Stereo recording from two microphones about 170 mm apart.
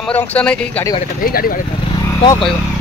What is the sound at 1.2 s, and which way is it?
Speech, 60° left (ahead or behind).